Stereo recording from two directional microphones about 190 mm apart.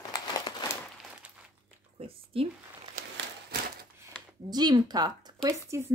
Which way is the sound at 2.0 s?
30° right (ahead or behind).